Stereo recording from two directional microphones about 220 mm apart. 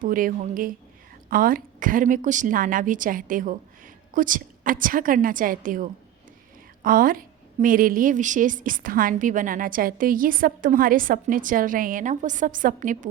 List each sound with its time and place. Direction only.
0.0 s a woman's voice: 40° right (ahead or behind)